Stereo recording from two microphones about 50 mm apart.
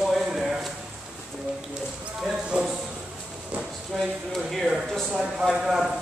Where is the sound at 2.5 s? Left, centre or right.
Centre.